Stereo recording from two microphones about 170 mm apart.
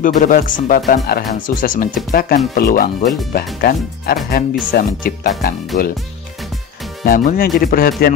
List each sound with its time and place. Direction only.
0.0 s speech: 50° left (ahead or behind)
7.1 s speech: 55° left (ahead or behind)